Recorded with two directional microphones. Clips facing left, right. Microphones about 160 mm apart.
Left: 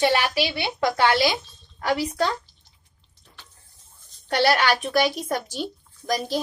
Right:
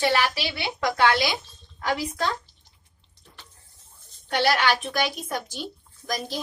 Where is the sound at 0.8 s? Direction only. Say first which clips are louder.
Left 2 dB; 30° left (ahead or behind).